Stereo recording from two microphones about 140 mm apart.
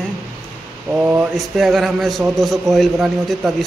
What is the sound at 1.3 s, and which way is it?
Speech, centre (ahead or behind).